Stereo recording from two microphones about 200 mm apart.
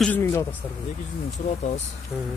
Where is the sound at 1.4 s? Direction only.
35° left (ahead or behind).